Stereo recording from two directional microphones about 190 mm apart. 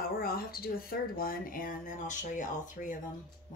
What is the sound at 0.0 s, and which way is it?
Speech, 50° left (ahead or behind).